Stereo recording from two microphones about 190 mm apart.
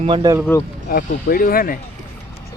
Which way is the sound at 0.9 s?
45° left (ahead or behind).